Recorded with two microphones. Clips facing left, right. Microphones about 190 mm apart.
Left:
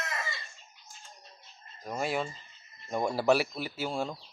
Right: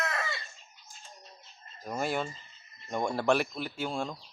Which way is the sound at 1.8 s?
Centre (ahead or behind).